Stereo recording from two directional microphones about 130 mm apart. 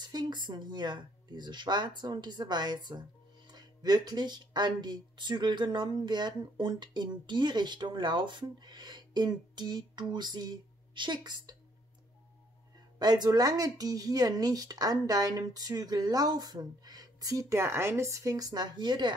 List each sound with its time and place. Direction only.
0.0 s speech: 35° right (ahead or behind)
13.0 s speech: 30° right (ahead or behind)